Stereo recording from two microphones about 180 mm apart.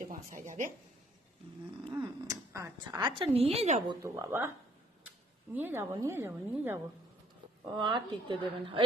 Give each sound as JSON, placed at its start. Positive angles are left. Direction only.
{"t": 0.1, "sound": "a woman's voice", "side_deg": -45}
{"t": 1.8, "sound": "a sound", "side_deg": -20}
{"t": 2.8, "sound": "a woman's voice", "side_deg": -25}
{"t": 4.0, "sound": "a woman's voice", "side_deg": -15}
{"t": 5.5, "sound": "a woman's voice", "side_deg": -10}
{"t": 7.7, "sound": "a woman's voice", "side_deg": -25}